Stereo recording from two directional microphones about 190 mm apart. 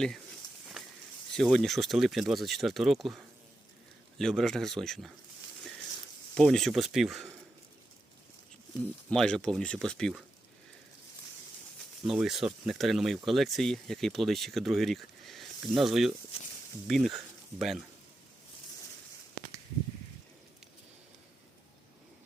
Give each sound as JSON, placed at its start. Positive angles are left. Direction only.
{"t": 0.4, "sound": "a sound", "side_deg": 20}
{"t": 1.3, "sound": "speech", "side_deg": 0}
{"t": 6.3, "sound": "speech", "side_deg": 0}
{"t": 9.0, "sound": "speech", "side_deg": 5}
{"t": 12.0, "sound": "speech", "side_deg": 0}